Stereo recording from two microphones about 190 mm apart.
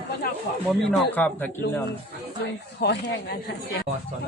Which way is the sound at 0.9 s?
10° left (ahead or behind).